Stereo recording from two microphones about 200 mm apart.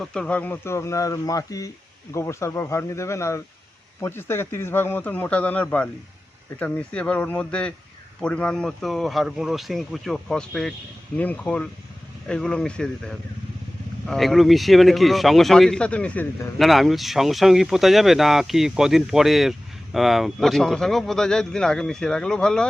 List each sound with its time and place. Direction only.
0.0 s speech: 5° left (ahead or behind)